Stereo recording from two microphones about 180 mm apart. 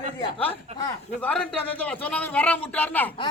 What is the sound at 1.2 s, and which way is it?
A man's voice, 5° left (ahead or behind).